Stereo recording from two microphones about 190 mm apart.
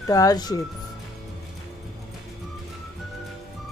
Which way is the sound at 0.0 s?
20° left (ahead or behind).